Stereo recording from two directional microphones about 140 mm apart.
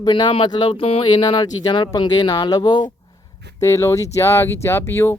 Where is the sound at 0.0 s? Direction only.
30° left (ahead or behind).